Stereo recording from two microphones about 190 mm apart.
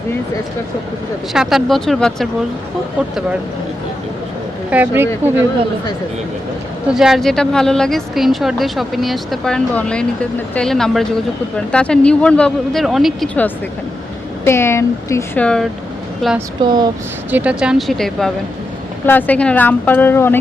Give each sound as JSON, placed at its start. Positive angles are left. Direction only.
{"t": 1.3, "sound": "speech", "side_deg": 0}
{"t": 4.7, "sound": "speech", "side_deg": -10}
{"t": 6.8, "sound": "speech", "side_deg": -5}
{"t": 16.6, "sound": "speech", "side_deg": -20}
{"t": 17.3, "sound": "speech", "side_deg": -5}